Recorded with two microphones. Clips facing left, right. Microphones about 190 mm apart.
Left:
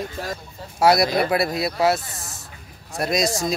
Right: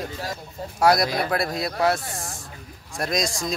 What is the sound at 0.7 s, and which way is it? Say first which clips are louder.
Speech: left 2 dB; 10° left (ahead or behind).